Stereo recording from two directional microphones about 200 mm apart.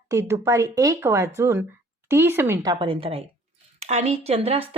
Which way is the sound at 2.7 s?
25° right (ahead or behind).